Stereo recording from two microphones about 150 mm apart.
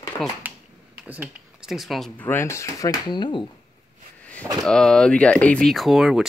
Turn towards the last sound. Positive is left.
turn(degrees=0)  # may be behind; listen again after turning